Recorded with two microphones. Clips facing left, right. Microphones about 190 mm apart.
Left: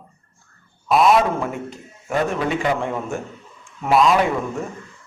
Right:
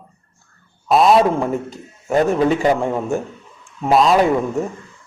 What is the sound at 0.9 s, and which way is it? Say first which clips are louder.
A man's voice: right 3 dB; 30° right (ahead or behind).